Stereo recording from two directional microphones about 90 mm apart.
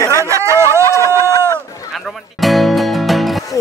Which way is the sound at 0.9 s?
35° left (ahead or behind).